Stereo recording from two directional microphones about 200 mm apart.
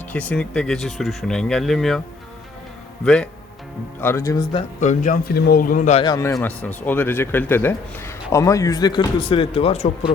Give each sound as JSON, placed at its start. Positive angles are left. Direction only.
{"t": 0.1, "sound": "speech", "side_deg": 5}
{"t": 3.0, "sound": "speech", "side_deg": 5}
{"t": 4.0, "sound": "speech", "side_deg": 15}
{"t": 4.8, "sound": "a man's voice", "side_deg": 40}
{"t": 6.0, "sound": "a man's voice", "side_deg": 20}
{"t": 6.3, "sound": "speech", "side_deg": 10}